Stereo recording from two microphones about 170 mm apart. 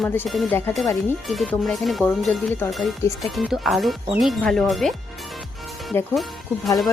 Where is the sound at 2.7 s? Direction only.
Centre (ahead or behind).